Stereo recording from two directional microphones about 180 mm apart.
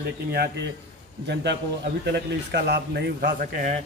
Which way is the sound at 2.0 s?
65° right (ahead or behind).